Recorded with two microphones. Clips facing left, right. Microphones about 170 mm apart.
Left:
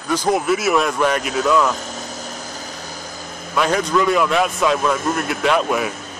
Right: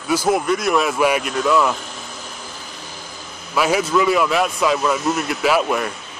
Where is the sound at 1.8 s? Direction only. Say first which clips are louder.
Left 4 dB; 40° left (ahead or behind).